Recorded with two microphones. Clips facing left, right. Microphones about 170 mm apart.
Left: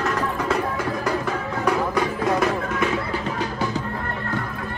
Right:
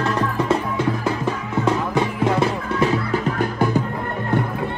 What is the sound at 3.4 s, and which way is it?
Music, 55° right (ahead or behind).